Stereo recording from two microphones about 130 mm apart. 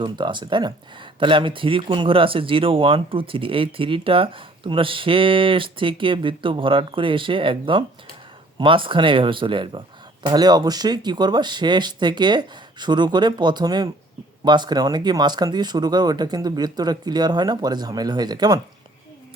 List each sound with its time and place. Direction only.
0.0 s speech: 35° right (ahead or behind)